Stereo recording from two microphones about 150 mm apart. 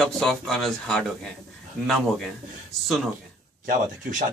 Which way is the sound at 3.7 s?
60° right (ahead or behind).